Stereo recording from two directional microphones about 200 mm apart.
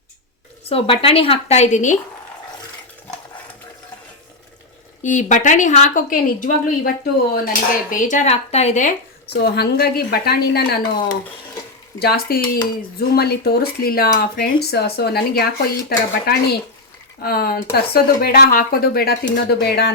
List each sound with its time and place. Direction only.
0.7 s a woman's voice: 30° left (ahead or behind)
5.0 s a woman's voice: 40° left (ahead or behind)
9.3 s speech: 55° left (ahead or behind)